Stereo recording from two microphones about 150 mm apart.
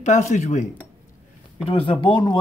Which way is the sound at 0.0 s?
50° left (ahead or behind).